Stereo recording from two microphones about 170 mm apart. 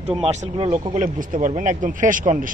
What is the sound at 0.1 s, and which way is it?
Speech, 40° right (ahead or behind).